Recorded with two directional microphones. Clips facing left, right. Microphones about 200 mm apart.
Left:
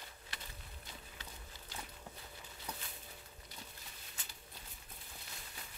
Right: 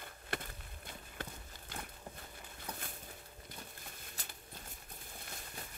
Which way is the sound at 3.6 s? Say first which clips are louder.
Right 3 dB; 50° right (ahead or behind).